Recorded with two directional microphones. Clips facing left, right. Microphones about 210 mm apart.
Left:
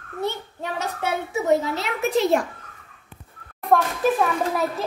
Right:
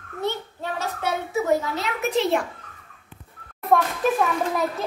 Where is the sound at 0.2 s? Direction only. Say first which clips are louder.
Even; 15° left (ahead or behind).